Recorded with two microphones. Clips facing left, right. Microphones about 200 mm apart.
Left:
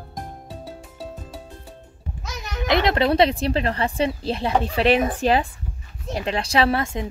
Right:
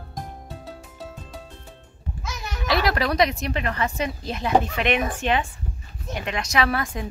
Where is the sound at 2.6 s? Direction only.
20° left (ahead or behind).